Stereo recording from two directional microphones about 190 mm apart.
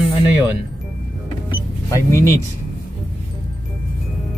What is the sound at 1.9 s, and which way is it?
Speech, 15° left (ahead or behind).